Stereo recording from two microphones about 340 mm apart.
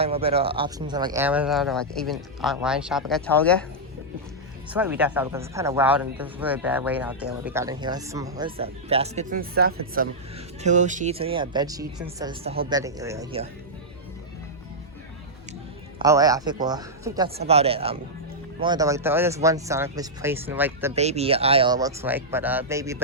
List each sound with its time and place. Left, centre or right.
0.0 s speech: centre
4.7 s speech: centre
16.0 s speech: centre
20.9 s speech: centre